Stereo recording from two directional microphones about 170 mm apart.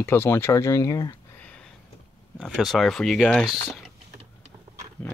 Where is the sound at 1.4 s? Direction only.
5° left (ahead or behind).